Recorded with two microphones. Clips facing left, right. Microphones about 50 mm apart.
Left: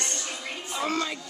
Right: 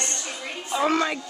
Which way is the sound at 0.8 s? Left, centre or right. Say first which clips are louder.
Right 6 dB; right.